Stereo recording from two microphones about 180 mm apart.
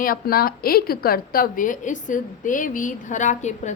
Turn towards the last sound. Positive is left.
turn(degrees=40)  # may be behind; listen again after turning